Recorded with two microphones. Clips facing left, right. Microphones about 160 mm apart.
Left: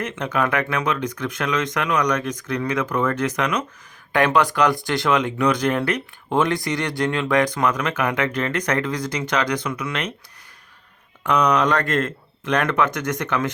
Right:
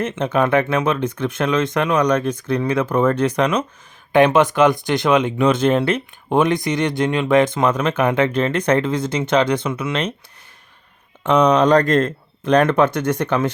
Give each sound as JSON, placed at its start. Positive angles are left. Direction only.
{"t": 0.0, "sound": "speech", "side_deg": -25}
{"t": 4.1, "sound": "speech", "side_deg": -20}
{"t": 11.2, "sound": "speech", "side_deg": -25}